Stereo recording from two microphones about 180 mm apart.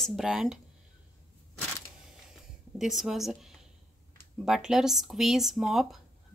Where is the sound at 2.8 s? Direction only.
Centre (ahead or behind).